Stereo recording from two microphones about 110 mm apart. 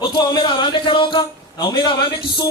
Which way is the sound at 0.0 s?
45° left (ahead or behind).